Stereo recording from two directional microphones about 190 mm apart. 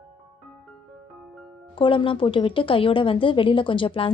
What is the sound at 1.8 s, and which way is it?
Speech, 25° left (ahead or behind).